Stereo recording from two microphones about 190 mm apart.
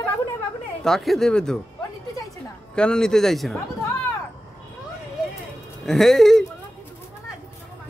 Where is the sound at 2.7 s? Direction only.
5° left (ahead or behind).